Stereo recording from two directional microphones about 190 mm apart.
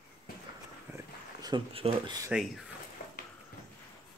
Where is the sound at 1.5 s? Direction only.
25° right (ahead or behind).